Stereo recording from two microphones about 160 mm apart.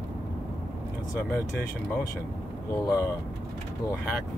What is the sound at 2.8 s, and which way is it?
Speech, 15° left (ahead or behind).